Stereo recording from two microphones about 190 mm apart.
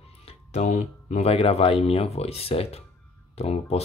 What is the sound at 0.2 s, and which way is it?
Speech, 35° left (ahead or behind).